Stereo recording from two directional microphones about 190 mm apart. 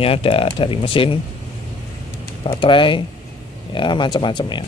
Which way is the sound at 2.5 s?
25° left (ahead or behind).